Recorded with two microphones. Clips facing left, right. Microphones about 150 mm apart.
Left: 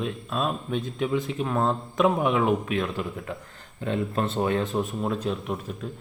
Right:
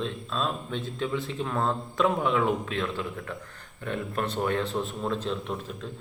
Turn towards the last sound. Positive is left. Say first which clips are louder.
# left 2 dB
turn(degrees=10)  # may be behind; listen again after turning